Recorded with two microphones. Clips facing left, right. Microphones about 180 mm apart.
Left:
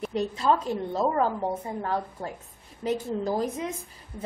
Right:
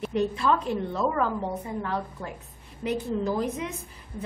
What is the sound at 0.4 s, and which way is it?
A woman's voice, 35° left (ahead or behind).